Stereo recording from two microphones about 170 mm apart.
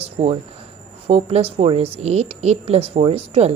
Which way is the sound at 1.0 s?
35° right (ahead or behind).